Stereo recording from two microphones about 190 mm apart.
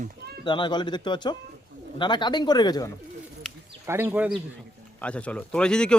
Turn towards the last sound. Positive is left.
turn(degrees=5)  # may be behind; listen again after turning